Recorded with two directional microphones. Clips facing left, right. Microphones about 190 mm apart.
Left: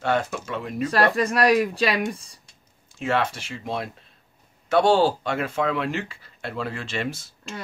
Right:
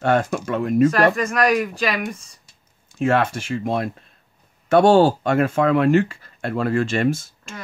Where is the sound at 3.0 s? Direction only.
50° right (ahead or behind).